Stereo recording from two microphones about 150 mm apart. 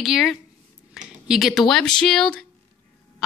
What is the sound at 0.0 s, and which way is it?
Speech, centre (ahead or behind).